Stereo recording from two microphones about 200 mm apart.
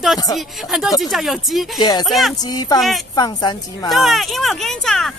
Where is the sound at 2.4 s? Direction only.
20° left (ahead or behind).